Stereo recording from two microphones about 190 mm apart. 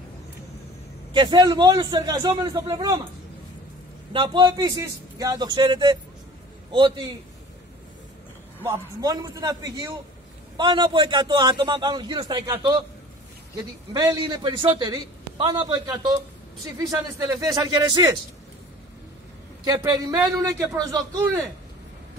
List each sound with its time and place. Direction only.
1.1 s a man's voice: 25° right (ahead or behind)
4.1 s a man's voice: 25° right (ahead or behind)
8.6 s a man's voice: 20° right (ahead or behind)
13.9 s a man's voice: 20° right (ahead or behind)
19.6 s a man's voice: 20° right (ahead or behind)